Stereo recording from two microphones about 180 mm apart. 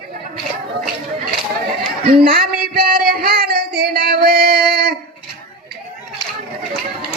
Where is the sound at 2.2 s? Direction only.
55° right (ahead or behind).